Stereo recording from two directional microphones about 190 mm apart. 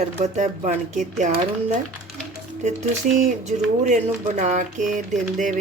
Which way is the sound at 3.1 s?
40° right (ahead or behind).